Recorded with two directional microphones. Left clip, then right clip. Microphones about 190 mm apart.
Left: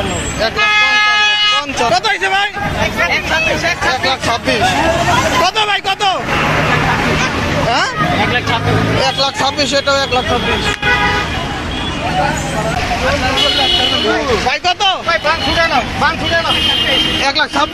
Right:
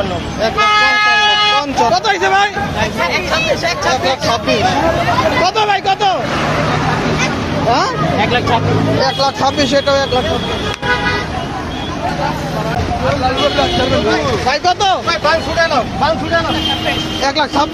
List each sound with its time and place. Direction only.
0.7 s a sound: 60° right (ahead or behind)
1.9 s speech: 5° left (ahead or behind)
4.0 s speech: centre (ahead or behind)
9.4 s speech: centre (ahead or behind)
14.5 s speech: 10° left (ahead or behind)